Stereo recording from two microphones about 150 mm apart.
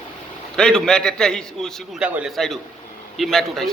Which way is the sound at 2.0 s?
10° right (ahead or behind).